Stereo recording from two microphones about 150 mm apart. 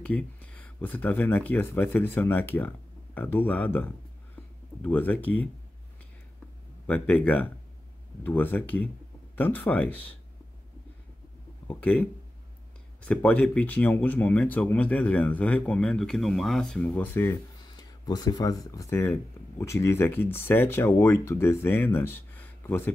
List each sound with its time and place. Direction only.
0.0 s speech: 10° left (ahead or behind)
6.9 s speech: 10° left (ahead or behind)
11.6 s speech: 10° left (ahead or behind)
17.7 s speech: 25° left (ahead or behind)